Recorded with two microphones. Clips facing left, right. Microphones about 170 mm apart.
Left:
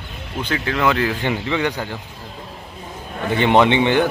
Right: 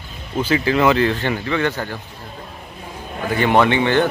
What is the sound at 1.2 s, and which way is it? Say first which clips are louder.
Speech: even; 15° left (ahead or behind).